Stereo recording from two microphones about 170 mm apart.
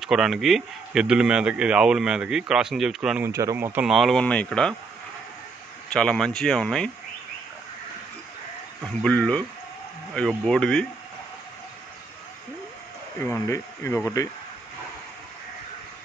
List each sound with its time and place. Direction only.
0.0 s speech: centre (ahead or behind)
3.3 s speech: 15° right (ahead or behind); by 4.7 s 5° left (ahead or behind)
5.9 s speech: 5° left (ahead or behind)
8.8 s speech: 5° left (ahead or behind)
13.2 s speech: 15° left (ahead or behind)